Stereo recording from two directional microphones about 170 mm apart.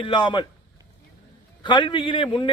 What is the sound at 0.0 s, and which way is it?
Speech, 30° left (ahead or behind).